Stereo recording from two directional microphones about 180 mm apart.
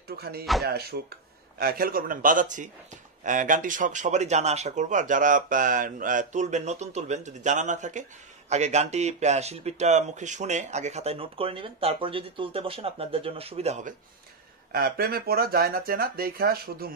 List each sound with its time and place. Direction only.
0.2 s speech: 60° right (ahead or behind); by 13.9 s 40° right (ahead or behind)
14.7 s speech: 55° right (ahead or behind)